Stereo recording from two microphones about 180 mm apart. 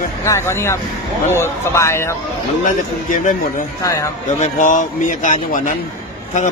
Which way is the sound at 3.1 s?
45° left (ahead or behind).